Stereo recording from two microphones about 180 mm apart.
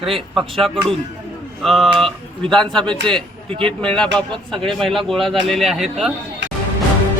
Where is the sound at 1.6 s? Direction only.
Centre (ahead or behind).